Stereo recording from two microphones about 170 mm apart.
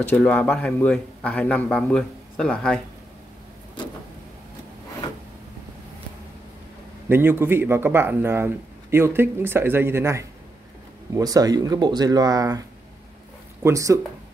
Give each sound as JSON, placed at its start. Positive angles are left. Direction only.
{"t": 0.1, "sound": "speech", "side_deg": 10}
{"t": 7.1, "sound": "speech", "side_deg": -15}